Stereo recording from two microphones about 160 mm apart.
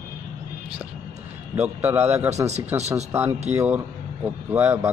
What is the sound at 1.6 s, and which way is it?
Speech, 15° right (ahead or behind).